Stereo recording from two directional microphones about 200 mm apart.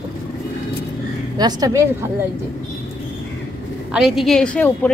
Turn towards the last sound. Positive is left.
turn(degrees=5)  # may be behind; listen again after turning